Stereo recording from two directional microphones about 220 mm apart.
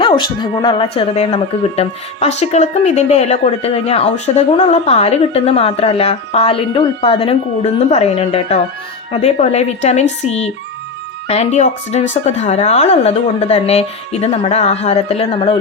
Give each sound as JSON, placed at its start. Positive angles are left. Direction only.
{"t": 0.0, "sound": "speech", "side_deg": 20}